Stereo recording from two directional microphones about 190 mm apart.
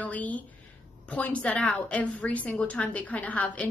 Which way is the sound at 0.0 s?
10° left (ahead or behind).